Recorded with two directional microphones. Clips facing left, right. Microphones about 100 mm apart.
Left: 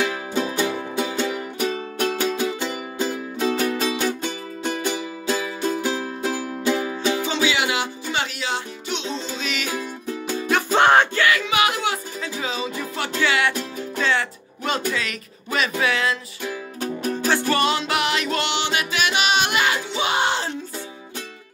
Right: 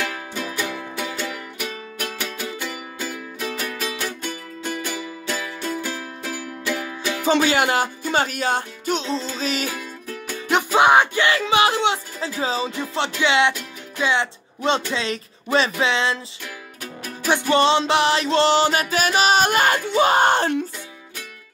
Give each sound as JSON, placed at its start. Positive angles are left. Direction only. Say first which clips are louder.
{"t": 0.0, "sound": "music", "louder": "left 5 dB", "side_deg": 25}
{"t": 7.2, "sound": "music", "louder": "right 4 dB", "side_deg": -50}
{"t": 9.7, "sound": "music", "louder": "left 3 dB", "side_deg": 20}
{"t": 10.7, "sound": "music", "louder": "right 1 dB", "side_deg": -10}
{"t": 11.1, "sound": "speech", "louder": "right 1 dB", "side_deg": -30}
{"t": 12.4, "sound": "music", "louder": "right 4 dB", "side_deg": -30}
{"t": 13.2, "sound": "speech", "louder": "right 2 dB", "side_deg": -20}
{"t": 16.4, "sound": "music", "louder": "left 13 dB", "side_deg": 30}
{"t": 17.3, "sound": "music", "louder": "right 4 dB", "side_deg": -20}